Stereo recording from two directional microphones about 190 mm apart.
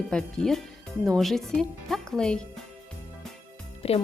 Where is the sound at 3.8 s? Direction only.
30° left (ahead or behind).